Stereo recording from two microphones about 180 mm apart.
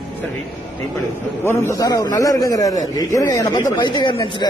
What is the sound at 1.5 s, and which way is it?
A man's voice, 15° left (ahead or behind).